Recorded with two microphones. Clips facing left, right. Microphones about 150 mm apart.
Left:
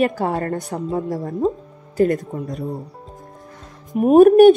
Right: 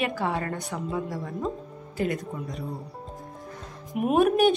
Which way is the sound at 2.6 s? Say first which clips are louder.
Left 7 dB; 25° left (ahead or behind).